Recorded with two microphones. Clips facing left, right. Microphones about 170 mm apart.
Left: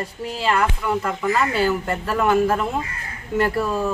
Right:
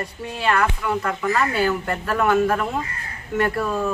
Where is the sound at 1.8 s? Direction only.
25° left (ahead or behind).